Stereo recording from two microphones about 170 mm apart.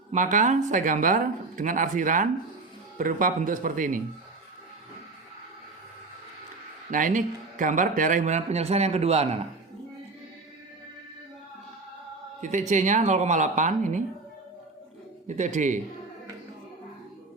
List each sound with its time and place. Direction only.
0.1 s speech: 50° right (ahead or behind)
6.9 s a man's voice: 50° right (ahead or behind)
12.4 s speech: 45° right (ahead or behind)
15.3 s speech: 45° right (ahead or behind)